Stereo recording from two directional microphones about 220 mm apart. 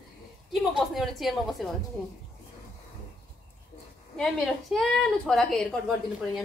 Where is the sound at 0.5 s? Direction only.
Centre (ahead or behind).